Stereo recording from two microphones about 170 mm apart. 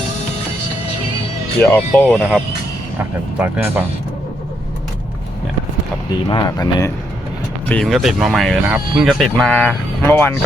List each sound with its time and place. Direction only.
1.6 s speech: 10° left (ahead or behind)
3.3 s speech: 10° right (ahead or behind)
6.2 s speech: 25° left (ahead or behind)
7.7 s speech: 5° left (ahead or behind)